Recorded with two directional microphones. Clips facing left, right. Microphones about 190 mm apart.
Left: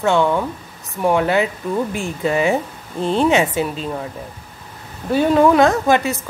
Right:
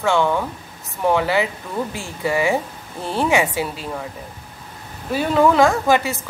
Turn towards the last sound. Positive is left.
turn(degrees=20)  # may be behind; listen again after turning